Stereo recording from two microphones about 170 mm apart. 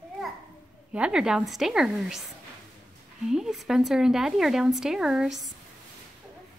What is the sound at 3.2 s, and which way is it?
Speech, centre (ahead or behind).